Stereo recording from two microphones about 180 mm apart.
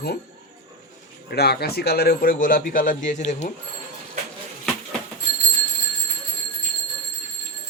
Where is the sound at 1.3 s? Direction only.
60° left (ahead or behind); by 3.5 s 40° left (ahead or behind).